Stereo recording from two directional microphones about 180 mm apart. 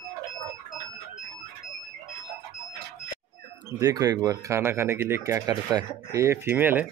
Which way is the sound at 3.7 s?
20° right (ahead or behind).